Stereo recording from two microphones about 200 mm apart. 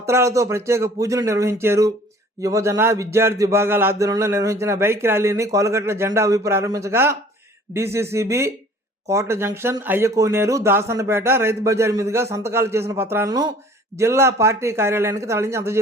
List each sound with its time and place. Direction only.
0.0 s speech: 15° right (ahead or behind)